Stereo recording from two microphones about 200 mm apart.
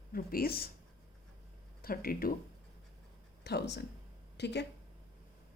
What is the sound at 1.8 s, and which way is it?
Speech, 45° left (ahead or behind).